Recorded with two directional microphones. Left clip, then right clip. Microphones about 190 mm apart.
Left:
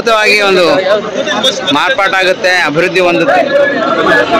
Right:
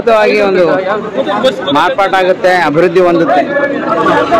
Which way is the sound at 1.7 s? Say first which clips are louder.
Even; 10° right (ahead or behind).